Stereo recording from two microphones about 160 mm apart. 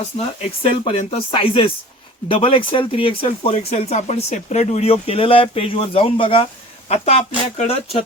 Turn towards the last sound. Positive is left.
turn(degrees=40)  # may be behind; listen again after turning